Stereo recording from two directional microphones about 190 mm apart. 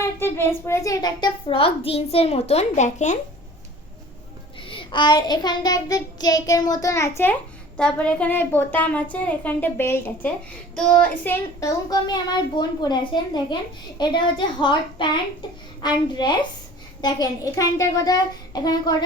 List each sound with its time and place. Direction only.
0.0 s a child's voice: 10° left (ahead or behind); by 3.2 s 40° left (ahead or behind)
4.6 s a child's voice: 25° left (ahead or behind)
7.8 s a woman's voice: 5° left (ahead or behind); by 19.0 s 20° left (ahead or behind)